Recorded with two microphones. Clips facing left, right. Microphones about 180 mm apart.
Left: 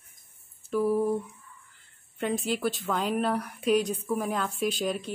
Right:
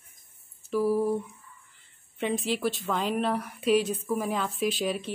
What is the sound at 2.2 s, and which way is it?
Speech, centre (ahead or behind).